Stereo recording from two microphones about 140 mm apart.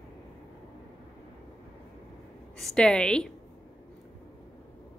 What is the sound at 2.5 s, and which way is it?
Speech, 5° left (ahead or behind).